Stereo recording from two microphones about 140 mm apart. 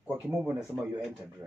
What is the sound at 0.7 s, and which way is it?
Speech, 5° right (ahead or behind).